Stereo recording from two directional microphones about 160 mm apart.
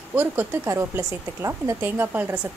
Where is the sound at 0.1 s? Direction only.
15° right (ahead or behind).